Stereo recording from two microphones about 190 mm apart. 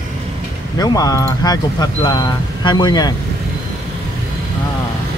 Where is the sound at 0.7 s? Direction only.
20° left (ahead or behind).